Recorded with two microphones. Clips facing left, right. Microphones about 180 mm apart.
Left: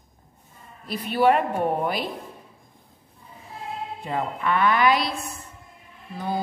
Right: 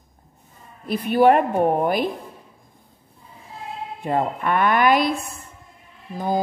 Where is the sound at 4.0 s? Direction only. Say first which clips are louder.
Right 6 dB; 55° right (ahead or behind).